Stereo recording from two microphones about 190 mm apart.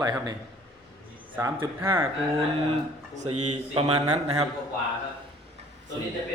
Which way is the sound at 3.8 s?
25° right (ahead or behind).